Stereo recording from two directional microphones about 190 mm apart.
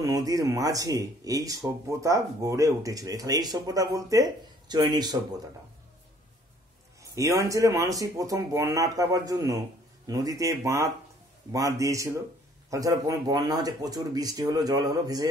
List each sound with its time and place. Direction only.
0.0 s speech: 20° right (ahead or behind)
7.0 s a man's voice: 15° right (ahead or behind)